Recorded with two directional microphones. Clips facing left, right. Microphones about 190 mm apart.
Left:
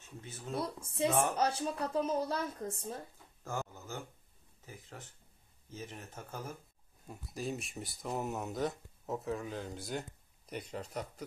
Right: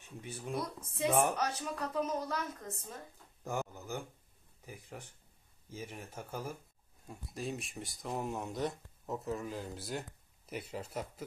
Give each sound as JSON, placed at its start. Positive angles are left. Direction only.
{"t": 0.0, "sound": "speech", "side_deg": -15}
{"t": 1.4, "sound": "speech", "side_deg": 30}
{"t": 3.4, "sound": "a sound", "side_deg": -15}
{"t": 4.6, "sound": "speech", "side_deg": -15}
{"t": 7.1, "sound": "speech", "side_deg": 0}